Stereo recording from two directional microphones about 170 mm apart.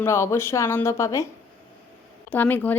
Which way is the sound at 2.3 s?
10° left (ahead or behind).